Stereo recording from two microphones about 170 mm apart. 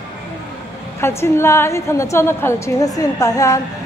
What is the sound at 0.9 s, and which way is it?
A woman's voice, 15° left (ahead or behind).